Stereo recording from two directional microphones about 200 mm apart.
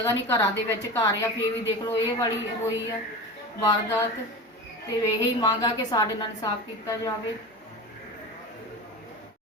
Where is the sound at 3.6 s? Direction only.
20° left (ahead or behind).